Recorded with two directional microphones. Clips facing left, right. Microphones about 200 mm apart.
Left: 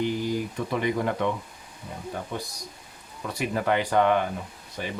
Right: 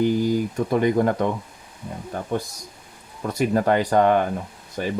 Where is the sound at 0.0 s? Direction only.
45° right (ahead or behind).